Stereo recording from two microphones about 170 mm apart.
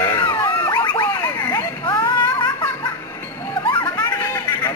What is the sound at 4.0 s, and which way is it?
Hubbub, 15° left (ahead or behind).